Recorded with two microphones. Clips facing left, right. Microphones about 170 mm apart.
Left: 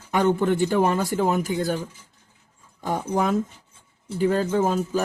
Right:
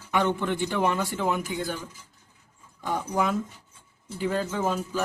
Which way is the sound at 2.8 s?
45° left (ahead or behind).